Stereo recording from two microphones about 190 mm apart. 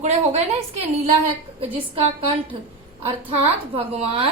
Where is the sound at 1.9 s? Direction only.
30° right (ahead or behind).